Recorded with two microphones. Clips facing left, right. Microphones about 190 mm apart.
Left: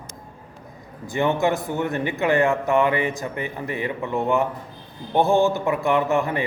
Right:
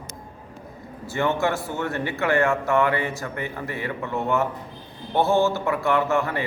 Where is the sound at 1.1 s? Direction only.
15° left (ahead or behind).